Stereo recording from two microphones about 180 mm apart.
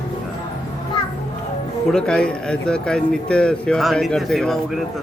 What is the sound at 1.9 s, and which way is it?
Speech, 5° left (ahead or behind).